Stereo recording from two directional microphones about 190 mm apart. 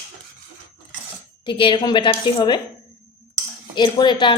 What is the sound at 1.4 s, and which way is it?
A woman's voice, 25° left (ahead or behind).